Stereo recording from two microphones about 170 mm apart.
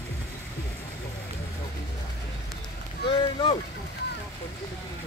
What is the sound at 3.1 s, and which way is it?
Speech, 30° left (ahead or behind).